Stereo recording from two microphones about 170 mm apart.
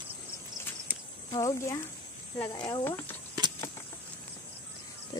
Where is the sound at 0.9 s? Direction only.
10° right (ahead or behind).